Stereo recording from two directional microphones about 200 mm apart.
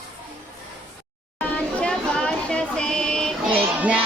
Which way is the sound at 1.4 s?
5° left (ahead or behind).